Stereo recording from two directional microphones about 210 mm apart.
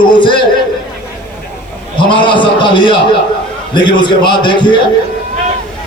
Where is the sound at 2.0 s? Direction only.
20° left (ahead or behind).